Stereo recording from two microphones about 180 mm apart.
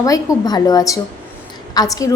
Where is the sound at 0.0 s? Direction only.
20° left (ahead or behind).